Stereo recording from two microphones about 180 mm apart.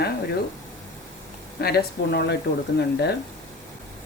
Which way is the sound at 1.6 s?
60° left (ahead or behind).